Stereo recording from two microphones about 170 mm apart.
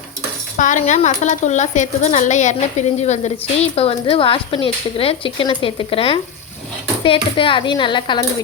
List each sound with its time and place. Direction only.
0.5 s a woman's voice: 45° left (ahead or behind); by 8.2 s 25° left (ahead or behind)